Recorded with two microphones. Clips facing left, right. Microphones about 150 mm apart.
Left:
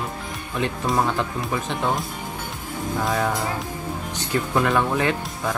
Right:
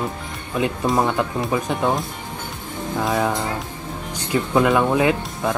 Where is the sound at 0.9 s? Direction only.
20° right (ahead or behind).